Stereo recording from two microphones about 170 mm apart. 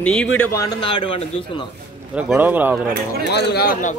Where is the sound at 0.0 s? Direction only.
5° left (ahead or behind).